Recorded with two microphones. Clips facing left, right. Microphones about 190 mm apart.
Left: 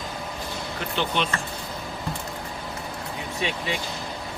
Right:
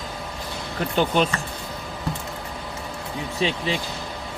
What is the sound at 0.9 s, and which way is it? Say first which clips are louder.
Speech: right 6 dB; 40° right (ahead or behind).